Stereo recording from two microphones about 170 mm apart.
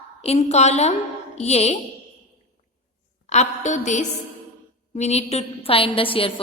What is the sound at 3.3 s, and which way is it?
A woman's voice, 45° left (ahead or behind).